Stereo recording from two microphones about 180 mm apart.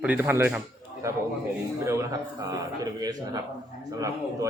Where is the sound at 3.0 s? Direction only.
20° right (ahead or behind).